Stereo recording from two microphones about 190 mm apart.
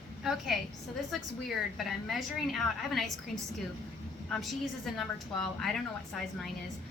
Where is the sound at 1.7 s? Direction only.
Centre (ahead or behind).